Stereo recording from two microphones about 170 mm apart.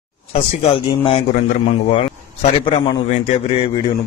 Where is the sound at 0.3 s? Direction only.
35° left (ahead or behind).